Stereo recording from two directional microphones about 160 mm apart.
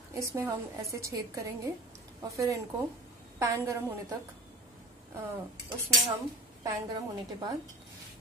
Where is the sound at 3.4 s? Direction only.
20° right (ahead or behind).